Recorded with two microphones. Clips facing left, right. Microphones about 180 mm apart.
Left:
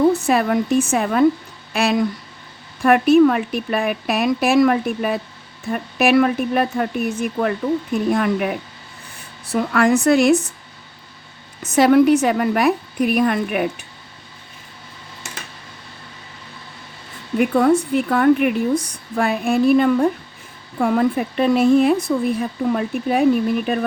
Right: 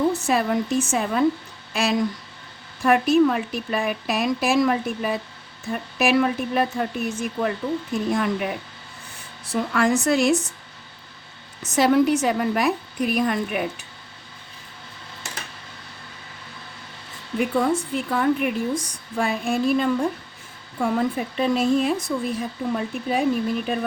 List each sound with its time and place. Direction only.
0.1 s speech: 60° left (ahead or behind)
11.6 s speech: 60° left (ahead or behind)
17.3 s speech: 65° left (ahead or behind)